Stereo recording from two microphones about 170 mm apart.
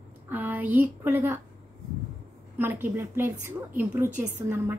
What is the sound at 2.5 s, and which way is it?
A woman's voice, 10° right (ahead or behind).